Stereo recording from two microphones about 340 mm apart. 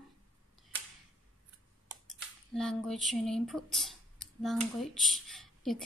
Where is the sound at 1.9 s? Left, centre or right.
Centre.